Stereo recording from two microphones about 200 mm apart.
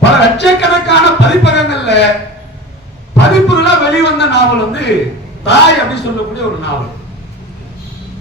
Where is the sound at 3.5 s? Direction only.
60° left (ahead or behind).